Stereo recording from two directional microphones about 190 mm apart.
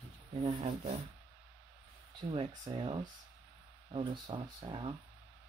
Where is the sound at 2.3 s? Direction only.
25° right (ahead or behind).